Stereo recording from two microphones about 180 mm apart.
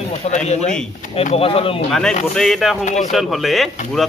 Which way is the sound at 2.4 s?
Centre (ahead or behind).